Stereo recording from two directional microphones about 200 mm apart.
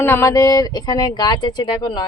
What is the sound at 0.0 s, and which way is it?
Speech, 10° left (ahead or behind).